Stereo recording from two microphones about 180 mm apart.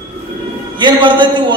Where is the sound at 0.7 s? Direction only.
25° right (ahead or behind).